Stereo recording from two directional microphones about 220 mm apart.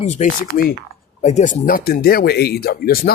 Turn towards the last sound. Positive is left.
turn(degrees=45)  # may be behind; listen again after turning